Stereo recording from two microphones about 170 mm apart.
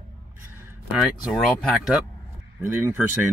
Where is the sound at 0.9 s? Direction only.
5° right (ahead or behind).